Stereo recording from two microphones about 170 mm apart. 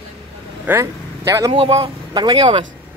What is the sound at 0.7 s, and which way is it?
Speech, 20° right (ahead or behind).